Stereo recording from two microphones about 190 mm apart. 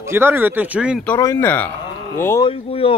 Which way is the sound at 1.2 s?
15° left (ahead or behind).